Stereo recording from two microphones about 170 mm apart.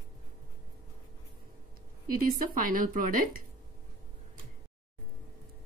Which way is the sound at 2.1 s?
55° right (ahead or behind).